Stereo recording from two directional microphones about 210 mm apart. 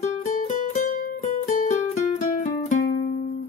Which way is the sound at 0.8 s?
40° left (ahead or behind).